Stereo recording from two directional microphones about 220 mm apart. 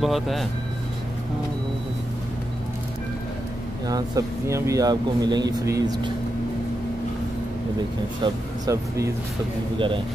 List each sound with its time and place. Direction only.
0.0 s speech: centre (ahead or behind)
3.8 s speech: 15° right (ahead or behind)
8.2 s speech: 15° right (ahead or behind)